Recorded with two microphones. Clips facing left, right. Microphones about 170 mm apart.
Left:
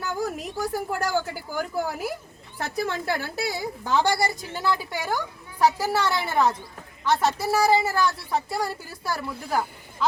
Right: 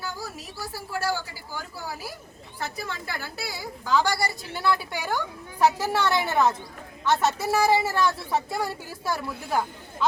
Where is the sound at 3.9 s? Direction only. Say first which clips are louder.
Left 1 dB; 25° left (ahead or behind).